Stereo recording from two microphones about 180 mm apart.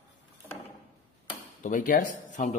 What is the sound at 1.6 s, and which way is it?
Speech, 45° left (ahead or behind).